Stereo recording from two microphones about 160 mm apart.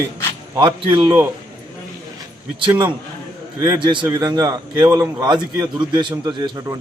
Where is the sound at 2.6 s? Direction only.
30° right (ahead or behind).